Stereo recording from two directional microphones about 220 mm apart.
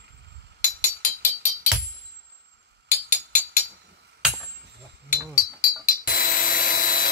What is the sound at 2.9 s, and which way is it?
Music, 35° left (ahead or behind).